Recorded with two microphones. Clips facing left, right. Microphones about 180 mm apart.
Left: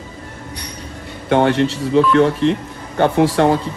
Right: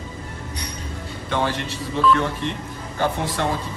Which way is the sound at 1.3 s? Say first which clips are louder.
Left 10 dB; 65° left (ahead or behind).